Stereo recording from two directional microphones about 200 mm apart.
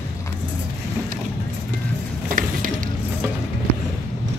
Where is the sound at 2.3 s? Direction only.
45° right (ahead or behind).